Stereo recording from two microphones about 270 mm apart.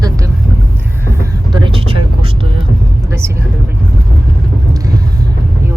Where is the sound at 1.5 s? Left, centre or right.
Centre.